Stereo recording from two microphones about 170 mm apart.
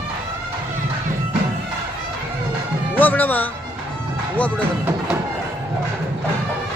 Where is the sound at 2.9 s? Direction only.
10° left (ahead or behind).